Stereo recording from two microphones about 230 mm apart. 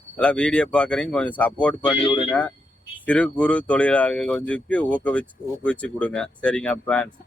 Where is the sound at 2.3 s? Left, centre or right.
Centre.